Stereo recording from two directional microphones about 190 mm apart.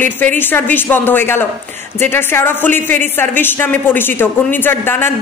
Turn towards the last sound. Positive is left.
turn(degrees=10)  # may be behind; listen again after turning